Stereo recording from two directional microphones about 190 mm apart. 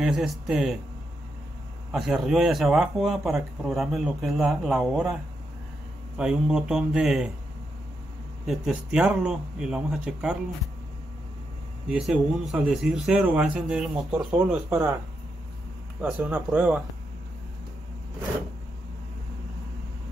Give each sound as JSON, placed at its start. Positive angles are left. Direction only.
{"t": 0.0, "sound": "speech", "side_deg": -5}
{"t": 1.9, "sound": "speech", "side_deg": 0}
{"t": 6.1, "sound": "speech", "side_deg": -5}
{"t": 8.5, "sound": "speech", "side_deg": -5}
{"t": 11.9, "sound": "speech", "side_deg": -5}
{"t": 16.0, "sound": "speech", "side_deg": -5}